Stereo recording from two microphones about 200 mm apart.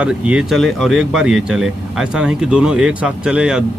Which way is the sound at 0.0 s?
5° right (ahead or behind).